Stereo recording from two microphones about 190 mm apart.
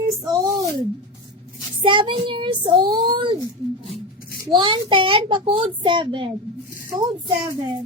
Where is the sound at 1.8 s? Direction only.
25° right (ahead or behind).